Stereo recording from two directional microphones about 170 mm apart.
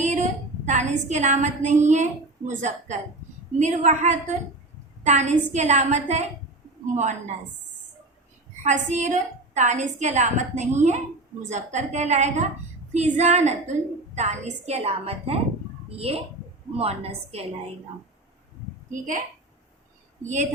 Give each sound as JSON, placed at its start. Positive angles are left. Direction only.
{"t": 0.0, "sound": "a woman's voice", "side_deg": -45}
{"t": 8.6, "sound": "a woman's voice", "side_deg": -45}
{"t": 18.9, "sound": "a woman's voice", "side_deg": -50}
{"t": 20.2, "sound": "a woman's voice", "side_deg": -45}